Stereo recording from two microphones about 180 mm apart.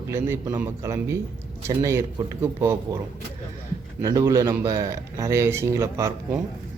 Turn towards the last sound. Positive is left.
turn(degrees=-15)  # may be behind; listen again after turning